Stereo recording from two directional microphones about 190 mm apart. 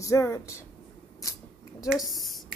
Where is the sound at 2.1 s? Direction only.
Centre (ahead or behind).